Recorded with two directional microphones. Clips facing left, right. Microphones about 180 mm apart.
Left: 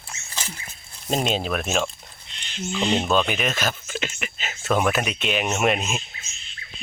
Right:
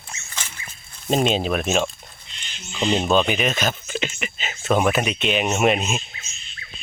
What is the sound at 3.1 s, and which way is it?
Speech, centre (ahead or behind).